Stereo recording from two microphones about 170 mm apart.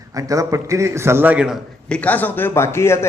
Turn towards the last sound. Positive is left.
turn(degrees=15)  # may be behind; listen again after turning